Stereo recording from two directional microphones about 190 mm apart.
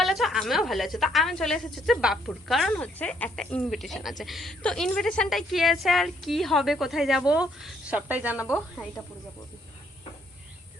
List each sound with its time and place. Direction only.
0.0 s a woman's voice: centre (ahead or behind)
9.0 s speech: 10° left (ahead or behind)